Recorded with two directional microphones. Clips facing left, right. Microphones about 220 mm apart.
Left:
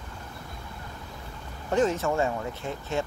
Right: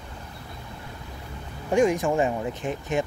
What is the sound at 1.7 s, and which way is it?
Speech, 15° right (ahead or behind).